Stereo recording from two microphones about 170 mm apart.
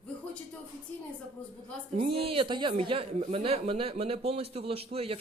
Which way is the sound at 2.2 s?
30° right (ahead or behind).